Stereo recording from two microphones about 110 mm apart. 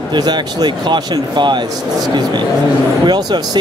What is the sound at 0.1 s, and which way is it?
Speech, 40° right (ahead or behind).